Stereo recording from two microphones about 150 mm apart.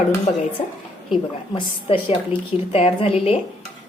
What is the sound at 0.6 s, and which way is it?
Speech, 55° left (ahead or behind).